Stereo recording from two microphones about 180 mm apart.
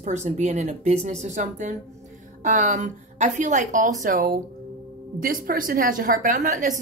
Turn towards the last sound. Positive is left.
turn(degrees=-45)  # may be behind; listen again after turning